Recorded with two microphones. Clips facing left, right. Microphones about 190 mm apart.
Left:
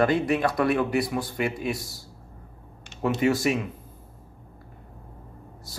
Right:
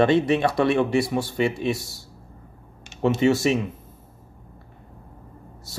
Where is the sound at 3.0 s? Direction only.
25° right (ahead or behind).